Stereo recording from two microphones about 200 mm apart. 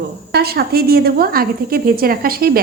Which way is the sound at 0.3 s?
55° right (ahead or behind).